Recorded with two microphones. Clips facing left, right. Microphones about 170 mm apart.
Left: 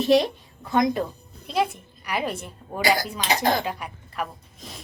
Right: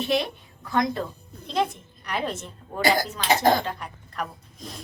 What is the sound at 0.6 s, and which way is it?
Speech, 20° left (ahead or behind).